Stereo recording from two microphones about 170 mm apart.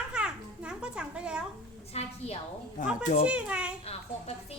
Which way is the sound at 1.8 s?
35° left (ahead or behind).